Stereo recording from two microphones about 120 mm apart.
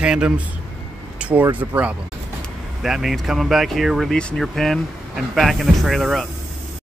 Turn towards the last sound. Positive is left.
turn(degrees=0)  # may be behind; listen again after turning